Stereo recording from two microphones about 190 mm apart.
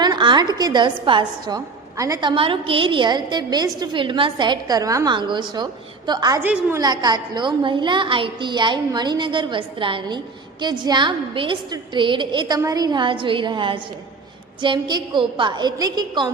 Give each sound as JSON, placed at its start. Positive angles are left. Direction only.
{"t": 0.0, "sound": "a woman's voice", "side_deg": -25}